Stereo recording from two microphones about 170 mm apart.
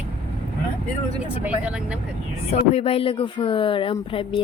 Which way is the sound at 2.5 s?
40° left (ahead or behind).